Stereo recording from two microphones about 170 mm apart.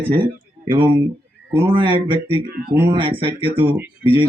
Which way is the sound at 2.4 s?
65° right (ahead or behind).